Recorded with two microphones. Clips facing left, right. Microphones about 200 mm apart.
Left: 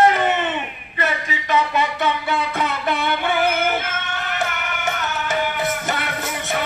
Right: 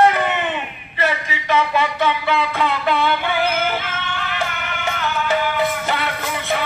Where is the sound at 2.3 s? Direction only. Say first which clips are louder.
Right 3 dB; 45° left (ahead or behind).